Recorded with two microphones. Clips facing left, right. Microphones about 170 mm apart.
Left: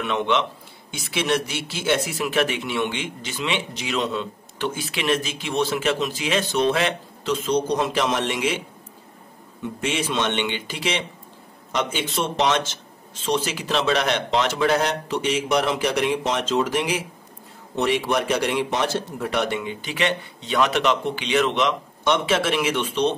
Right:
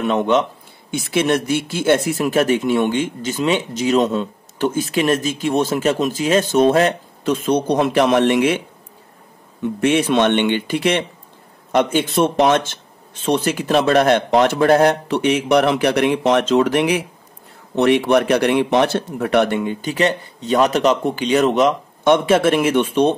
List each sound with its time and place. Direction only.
0.0 s speech: 45° right (ahead or behind)
9.8 s a man's voice: 60° right (ahead or behind)